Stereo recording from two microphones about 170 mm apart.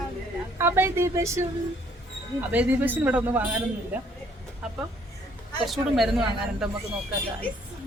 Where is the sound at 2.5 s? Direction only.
10° right (ahead or behind).